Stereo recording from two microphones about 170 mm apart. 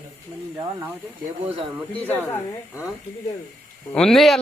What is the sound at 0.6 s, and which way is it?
Speech, 20° right (ahead or behind).